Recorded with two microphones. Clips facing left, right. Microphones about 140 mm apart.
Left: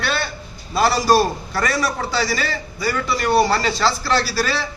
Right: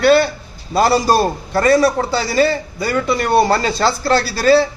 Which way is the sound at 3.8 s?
55° right (ahead or behind).